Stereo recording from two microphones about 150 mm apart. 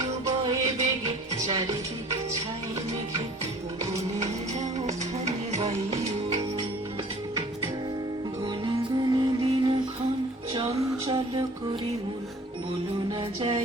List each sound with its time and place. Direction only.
0.3 s music: 25° right (ahead or behind)
4.6 s music: 50° right (ahead or behind)
9.1 s music: 30° right (ahead or behind)
11.0 s music: 35° right (ahead or behind)
13.1 s music: 35° right (ahead or behind)